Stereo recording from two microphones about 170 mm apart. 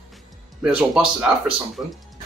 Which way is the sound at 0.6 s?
5° right (ahead or behind).